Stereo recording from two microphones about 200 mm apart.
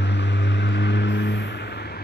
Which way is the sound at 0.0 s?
60° left (ahead or behind).